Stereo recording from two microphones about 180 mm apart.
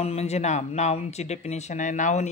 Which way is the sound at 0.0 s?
35° left (ahead or behind).